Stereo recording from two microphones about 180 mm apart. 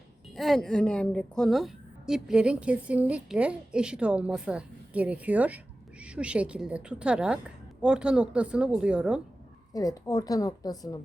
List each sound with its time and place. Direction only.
0.3 s a woman's voice: centre (ahead or behind)
9.7 s a woman's voice: 20° left (ahead or behind)